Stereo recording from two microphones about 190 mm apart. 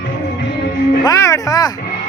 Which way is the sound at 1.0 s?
15° left (ahead or behind).